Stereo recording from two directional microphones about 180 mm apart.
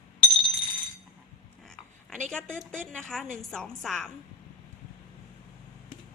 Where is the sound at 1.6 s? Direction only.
5° left (ahead or behind).